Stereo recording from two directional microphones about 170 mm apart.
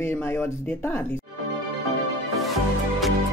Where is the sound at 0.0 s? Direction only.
15° left (ahead or behind).